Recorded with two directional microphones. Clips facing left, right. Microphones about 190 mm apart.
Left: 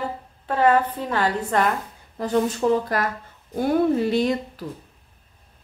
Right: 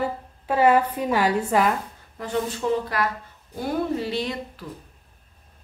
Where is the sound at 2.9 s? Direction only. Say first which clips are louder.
Left 1 dB; 45° left (ahead or behind).